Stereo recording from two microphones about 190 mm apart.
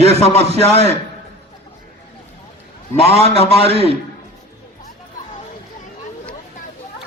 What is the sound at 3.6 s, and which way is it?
Speech, 30° right (ahead or behind).